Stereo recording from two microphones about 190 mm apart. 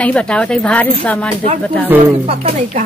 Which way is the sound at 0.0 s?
5° left (ahead or behind).